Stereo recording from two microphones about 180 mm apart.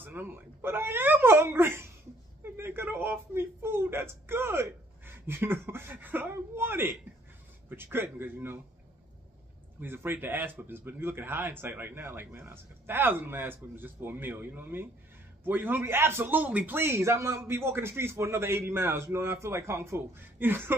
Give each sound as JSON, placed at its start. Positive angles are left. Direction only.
{"t": 0.0, "sound": "speech", "side_deg": -10}
{"t": 2.4, "sound": "a sound", "side_deg": -10}
{"t": 7.7, "sound": "speech", "side_deg": -10}
{"t": 9.8, "sound": "speech", "side_deg": -10}